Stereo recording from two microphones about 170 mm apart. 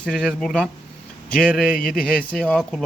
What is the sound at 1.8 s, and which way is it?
A man's voice, 5° left (ahead or behind).